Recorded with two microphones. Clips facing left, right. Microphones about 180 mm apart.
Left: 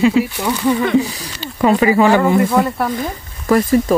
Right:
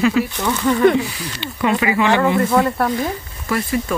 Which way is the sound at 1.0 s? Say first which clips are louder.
Left 4 dB; 40° left (ahead or behind).